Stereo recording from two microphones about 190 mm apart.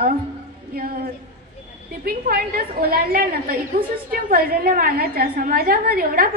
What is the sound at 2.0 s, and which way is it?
A woman's voice, 50° right (ahead or behind).